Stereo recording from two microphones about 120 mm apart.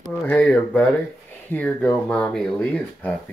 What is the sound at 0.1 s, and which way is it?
Speech, 10° left (ahead or behind).